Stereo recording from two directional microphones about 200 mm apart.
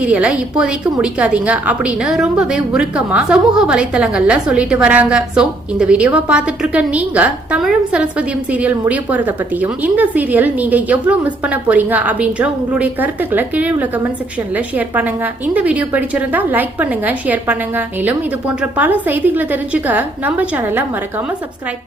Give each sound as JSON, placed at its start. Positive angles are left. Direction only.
{"t": 0.0, "sound": "a woman's voice", "side_deg": -5}